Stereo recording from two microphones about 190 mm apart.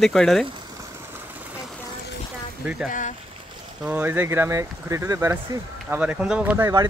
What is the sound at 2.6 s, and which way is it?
Speech, centre (ahead or behind).